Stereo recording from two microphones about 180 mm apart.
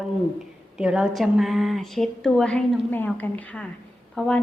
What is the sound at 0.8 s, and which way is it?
A woman's voice, 5° right (ahead or behind).